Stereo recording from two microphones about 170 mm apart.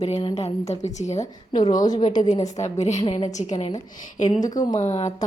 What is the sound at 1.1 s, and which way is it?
Speech, 25° left (ahead or behind).